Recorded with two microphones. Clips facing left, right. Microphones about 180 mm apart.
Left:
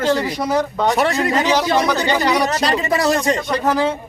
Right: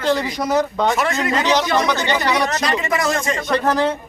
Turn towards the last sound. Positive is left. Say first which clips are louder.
# even
turn(degrees=10)  # may be behind; listen again after turning